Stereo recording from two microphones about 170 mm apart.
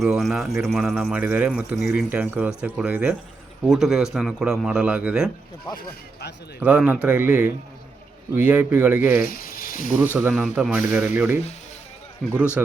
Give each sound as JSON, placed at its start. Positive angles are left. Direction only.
{"t": 0.0, "sound": "a man's voice", "side_deg": 0}
{"t": 6.6, "sound": "speech", "side_deg": -10}
{"t": 9.2, "sound": "speech", "side_deg": 55}
{"t": 10.0, "sound": "speech", "side_deg": -10}
{"t": 12.6, "sound": "speech", "side_deg": -10}